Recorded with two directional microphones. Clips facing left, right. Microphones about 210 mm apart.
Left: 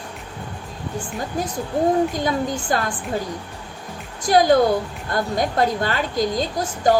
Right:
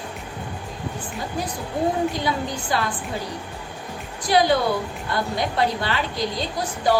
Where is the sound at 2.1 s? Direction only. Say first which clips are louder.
Left 3 dB; 45° left (ahead or behind).